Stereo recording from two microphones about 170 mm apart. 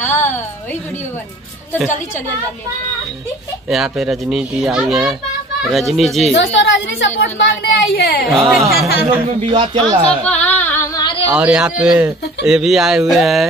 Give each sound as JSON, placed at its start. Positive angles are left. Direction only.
{"t": 0.0, "sound": "a sound", "side_deg": 10}
{"t": 3.7, "sound": "speech", "side_deg": 0}
{"t": 6.3, "sound": "a woman's voice", "side_deg": 90}
{"t": 7.8, "sound": "speech", "side_deg": 65}
{"t": 8.3, "sound": "speech", "side_deg": 0}
{"t": 9.4, "sound": "speech", "side_deg": -35}
{"t": 9.8, "sound": "speech", "side_deg": 10}
{"t": 10.4, "sound": "singing", "side_deg": 10}
{"t": 11.0, "sound": "a sound", "side_deg": 30}
{"t": 11.3, "sound": "speech", "side_deg": -5}